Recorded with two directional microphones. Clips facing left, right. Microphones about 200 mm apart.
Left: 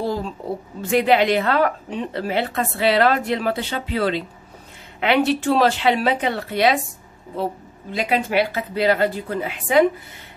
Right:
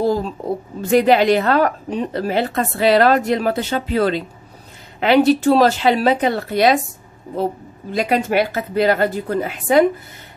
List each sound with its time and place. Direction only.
0.0 s a sound: 40° right (ahead or behind)
0.8 s a woman's voice: 40° right (ahead or behind)
7.9 s a woman's voice: 45° right (ahead or behind)